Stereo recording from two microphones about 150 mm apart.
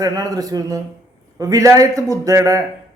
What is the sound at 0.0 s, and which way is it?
A man's voice, 25° right (ahead or behind).